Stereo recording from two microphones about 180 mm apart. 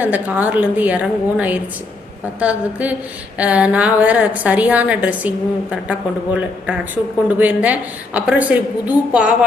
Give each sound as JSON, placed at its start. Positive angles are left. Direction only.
{"t": 0.0, "sound": "a woman's voice", "side_deg": -10}